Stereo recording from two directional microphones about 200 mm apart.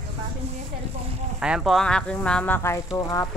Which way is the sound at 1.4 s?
5° right (ahead or behind).